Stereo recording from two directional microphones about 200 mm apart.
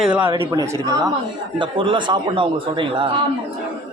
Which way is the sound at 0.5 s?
15° right (ahead or behind).